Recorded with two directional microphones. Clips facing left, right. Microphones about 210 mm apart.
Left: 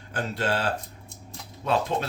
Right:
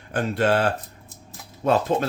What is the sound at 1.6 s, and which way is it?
Speech, 45° right (ahead or behind).